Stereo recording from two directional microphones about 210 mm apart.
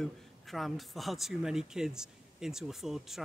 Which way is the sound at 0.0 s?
Centre (ahead or behind).